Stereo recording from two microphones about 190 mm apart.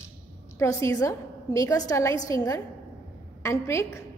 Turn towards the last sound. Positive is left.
turn(degrees=15)  # may be behind; listen again after turning